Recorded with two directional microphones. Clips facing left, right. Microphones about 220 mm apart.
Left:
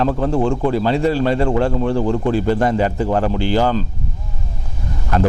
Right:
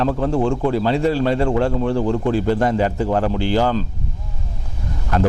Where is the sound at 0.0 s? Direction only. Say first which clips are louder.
Left 1 dB; 15° left (ahead or behind).